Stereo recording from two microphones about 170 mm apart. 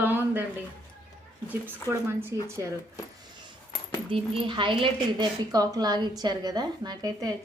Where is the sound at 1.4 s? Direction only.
10° right (ahead or behind).